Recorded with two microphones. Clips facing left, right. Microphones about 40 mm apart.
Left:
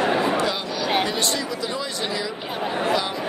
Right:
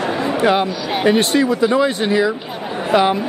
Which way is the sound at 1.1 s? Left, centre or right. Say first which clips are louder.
Right 10 dB; right.